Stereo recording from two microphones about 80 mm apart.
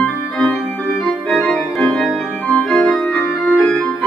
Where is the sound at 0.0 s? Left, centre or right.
Centre.